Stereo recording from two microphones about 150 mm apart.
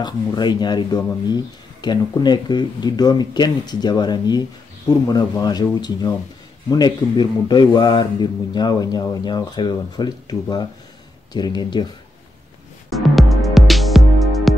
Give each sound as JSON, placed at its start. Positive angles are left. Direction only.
{"t": 0.0, "sound": "speech", "side_deg": 30}
{"t": 12.9, "sound": "music", "side_deg": 0}